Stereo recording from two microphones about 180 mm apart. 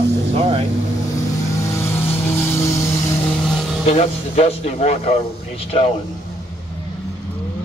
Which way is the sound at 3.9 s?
35° left (ahead or behind).